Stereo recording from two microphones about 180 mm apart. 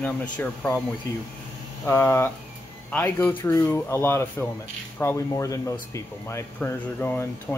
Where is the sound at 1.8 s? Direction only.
15° left (ahead or behind).